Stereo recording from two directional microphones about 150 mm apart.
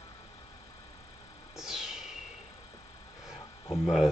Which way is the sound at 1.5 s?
5° right (ahead or behind).